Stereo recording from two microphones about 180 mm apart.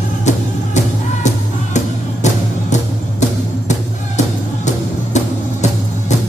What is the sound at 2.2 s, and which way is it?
Music, 40° left (ahead or behind).